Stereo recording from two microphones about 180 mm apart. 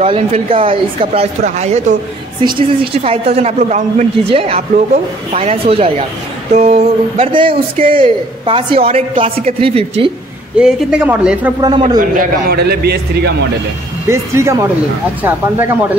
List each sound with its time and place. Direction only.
0.0 s a man's voice: 35° right (ahead or behind)
2.4 s a man's voice: 30° right (ahead or behind)
10.6 s speech: 5° right (ahead or behind)
12.0 s a man's voice: 55° right (ahead or behind)
14.0 s speech: 15° right (ahead or behind)